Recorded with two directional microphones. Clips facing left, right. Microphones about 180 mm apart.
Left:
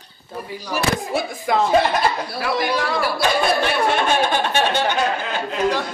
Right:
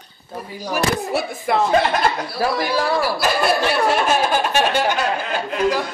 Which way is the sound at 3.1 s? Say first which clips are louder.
Even; 5° right (ahead or behind).